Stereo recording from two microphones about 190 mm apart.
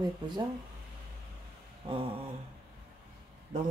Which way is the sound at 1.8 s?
25° right (ahead or behind).